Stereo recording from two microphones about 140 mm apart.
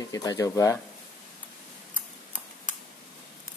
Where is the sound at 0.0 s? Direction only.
25° left (ahead or behind).